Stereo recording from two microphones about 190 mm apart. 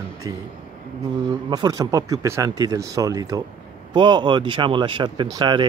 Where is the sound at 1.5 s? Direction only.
20° right (ahead or behind).